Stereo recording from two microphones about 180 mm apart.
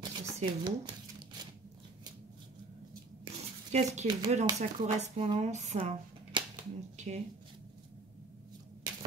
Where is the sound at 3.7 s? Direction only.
40° right (ahead or behind).